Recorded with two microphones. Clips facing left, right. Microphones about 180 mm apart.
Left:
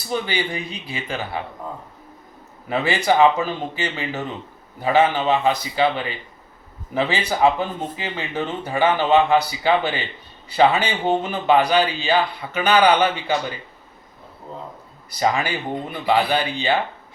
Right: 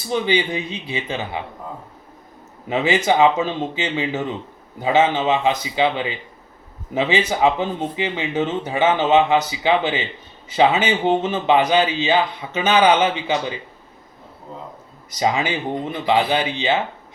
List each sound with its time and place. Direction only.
0.1 s speech: 20° right (ahead or behind)
2.6 s speech: 20° right (ahead or behind)
15.1 s speech: 20° right (ahead or behind)